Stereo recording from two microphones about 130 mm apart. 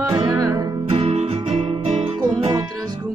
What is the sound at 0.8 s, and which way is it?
Music, 50° right (ahead or behind).